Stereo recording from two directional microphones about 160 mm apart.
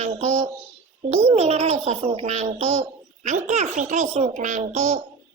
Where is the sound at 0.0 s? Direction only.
45° right (ahead or behind).